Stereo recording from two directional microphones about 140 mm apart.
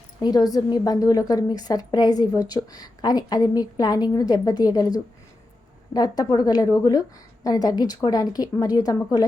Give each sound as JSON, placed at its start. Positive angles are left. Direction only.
{"t": 0.2, "sound": "a woman's voice", "side_deg": 30}